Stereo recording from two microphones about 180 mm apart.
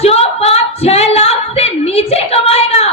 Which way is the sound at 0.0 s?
35° left (ahead or behind).